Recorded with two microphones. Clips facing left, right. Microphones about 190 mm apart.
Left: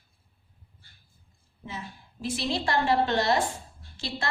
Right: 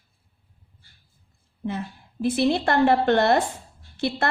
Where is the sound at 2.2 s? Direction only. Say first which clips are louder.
Right 8 dB; 55° right (ahead or behind).